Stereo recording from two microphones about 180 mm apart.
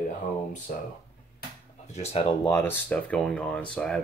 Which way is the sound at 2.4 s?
15° left (ahead or behind).